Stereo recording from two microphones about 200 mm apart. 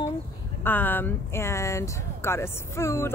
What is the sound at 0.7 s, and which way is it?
Speech, 10° left (ahead or behind).